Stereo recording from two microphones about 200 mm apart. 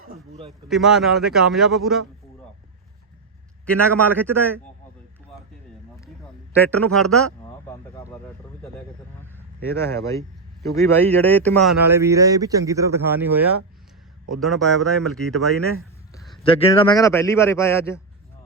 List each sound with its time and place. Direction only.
0.1 s speech: 30° right (ahead or behind)
0.7 s a man's voice: centre (ahead or behind)
4.2 s a man's voice: 10° left (ahead or behind)
6.5 s a man's voice: 5° left (ahead or behind)
7.4 s a sound: 15° left (ahead or behind)
9.2 s a man's voice: 10° left (ahead or behind)
11.9 s speech: 15° right (ahead or behind)
14.3 s a man's voice: centre (ahead or behind)
15.5 s speech: 90° right
16.4 s a man's voice: 30° left (ahead or behind); by 18.0 s 15° left (ahead or behind)